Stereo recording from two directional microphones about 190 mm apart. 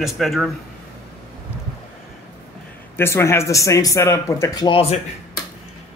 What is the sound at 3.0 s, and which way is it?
Speech, 15° left (ahead or behind).